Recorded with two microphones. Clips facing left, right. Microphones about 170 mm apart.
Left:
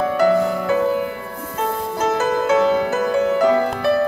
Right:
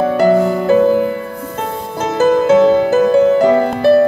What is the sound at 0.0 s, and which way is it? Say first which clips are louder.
Music: right 5 dB; 30° right (ahead or behind).